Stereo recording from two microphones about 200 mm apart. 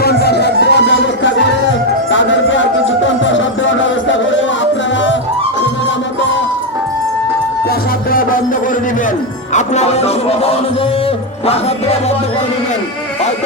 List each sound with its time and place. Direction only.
0.0 s music: 55° left (ahead or behind); by 4.4 s 70° left (ahead or behind)
9.5 s music: 35° left (ahead or behind)